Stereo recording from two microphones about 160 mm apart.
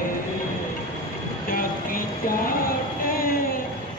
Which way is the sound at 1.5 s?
60° left (ahead or behind).